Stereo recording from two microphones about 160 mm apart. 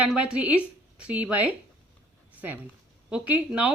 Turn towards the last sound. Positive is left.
turn(degrees=-5)  # may be behind; listen again after turning